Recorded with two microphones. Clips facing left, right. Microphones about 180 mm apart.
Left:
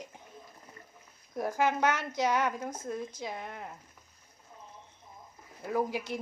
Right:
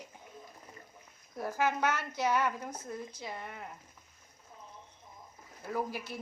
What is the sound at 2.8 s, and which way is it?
Speech, 90° left.